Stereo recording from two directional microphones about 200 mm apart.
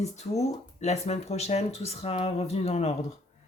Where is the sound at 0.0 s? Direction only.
35° left (ahead or behind).